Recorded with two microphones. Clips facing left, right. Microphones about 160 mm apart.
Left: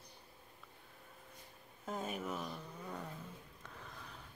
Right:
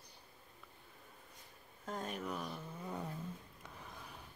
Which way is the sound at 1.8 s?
5° left (ahead or behind).